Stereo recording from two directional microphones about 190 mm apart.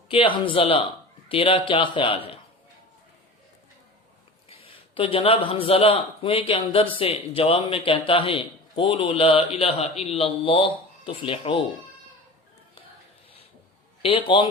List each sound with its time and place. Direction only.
0.1 s a man's voice: 30° left (ahead or behind)
4.4 s a man's voice: 30° left (ahead or behind)
14.0 s a man's voice: 25° left (ahead or behind)